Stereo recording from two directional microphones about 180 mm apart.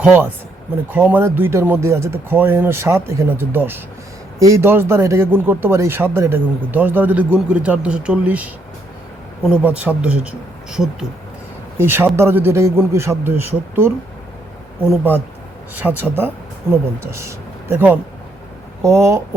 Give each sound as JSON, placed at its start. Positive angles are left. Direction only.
{"t": 0.0, "sound": "speech", "side_deg": -10}
{"t": 11.8, "sound": "speech", "side_deg": -10}